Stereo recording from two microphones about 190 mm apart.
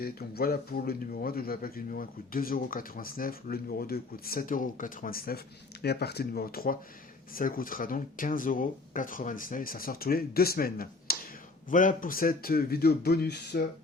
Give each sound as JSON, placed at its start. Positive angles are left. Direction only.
{"t": 0.0, "sound": "speech", "side_deg": 55}